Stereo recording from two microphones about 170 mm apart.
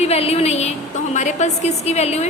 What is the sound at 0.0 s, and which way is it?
A woman's voice, 35° left (ahead or behind).